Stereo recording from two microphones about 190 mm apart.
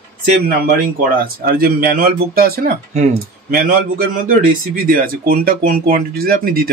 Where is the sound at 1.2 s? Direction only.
50° right (ahead or behind).